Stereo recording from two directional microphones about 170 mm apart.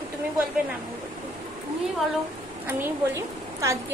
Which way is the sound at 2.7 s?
15° right (ahead or behind).